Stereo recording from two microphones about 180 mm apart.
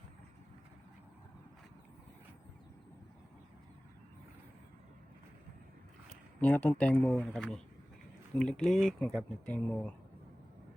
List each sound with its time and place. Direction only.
6.4 s speech: 10° left (ahead or behind)